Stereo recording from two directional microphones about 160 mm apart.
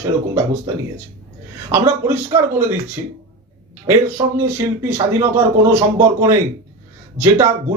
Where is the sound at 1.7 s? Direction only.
15° right (ahead or behind).